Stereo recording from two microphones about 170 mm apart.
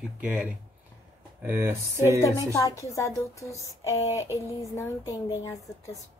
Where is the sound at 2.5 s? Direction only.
20° left (ahead or behind).